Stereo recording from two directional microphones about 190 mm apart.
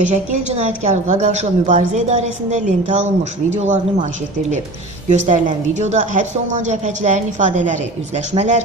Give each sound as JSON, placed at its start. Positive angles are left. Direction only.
{"t": 0.1, "sound": "a woman's voice", "side_deg": -40}